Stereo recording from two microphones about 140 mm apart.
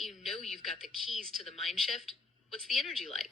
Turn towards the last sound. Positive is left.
turn(degrees=0)  # may be behind; listen again after turning